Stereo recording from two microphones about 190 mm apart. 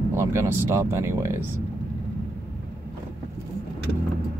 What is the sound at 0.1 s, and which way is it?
Speech, 15° right (ahead or behind).